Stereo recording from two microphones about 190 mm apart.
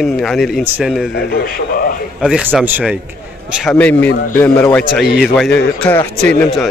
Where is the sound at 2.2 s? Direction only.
5° right (ahead or behind).